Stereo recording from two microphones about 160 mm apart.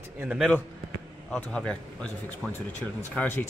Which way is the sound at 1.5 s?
5° left (ahead or behind).